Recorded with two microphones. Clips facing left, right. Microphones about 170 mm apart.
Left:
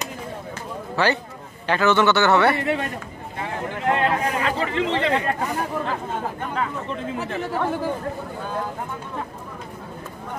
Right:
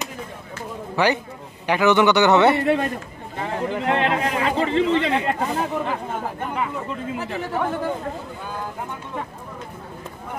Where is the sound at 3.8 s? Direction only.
20° right (ahead or behind).